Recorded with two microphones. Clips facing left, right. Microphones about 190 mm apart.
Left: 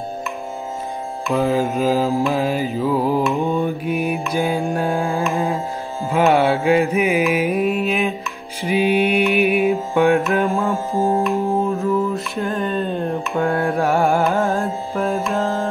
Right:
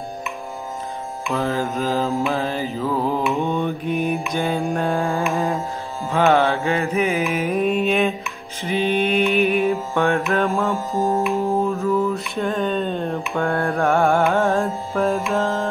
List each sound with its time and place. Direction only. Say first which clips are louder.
1.4 s music: left 5 dB; 15° left (ahead or behind)
2.0 s music: left 3 dB; centre (ahead or behind)
8.6 s mantra: left 3 dB; 10° left (ahead or behind)
11.2 s mantra: left 1 dB; centre (ahead or behind)
13.4 s music: left 2 dB; 5° left (ahead or behind)